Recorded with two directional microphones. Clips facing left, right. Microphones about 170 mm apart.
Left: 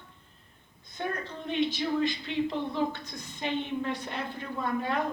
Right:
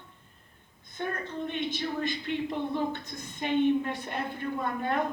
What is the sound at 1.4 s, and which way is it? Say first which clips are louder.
Speech: left 5 dB; 55° right (ahead or behind).